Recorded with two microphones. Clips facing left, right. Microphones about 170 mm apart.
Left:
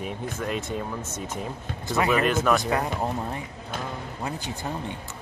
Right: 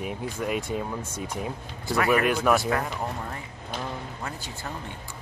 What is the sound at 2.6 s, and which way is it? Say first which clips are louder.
Speech: left 2 dB; 20° left (ahead or behind).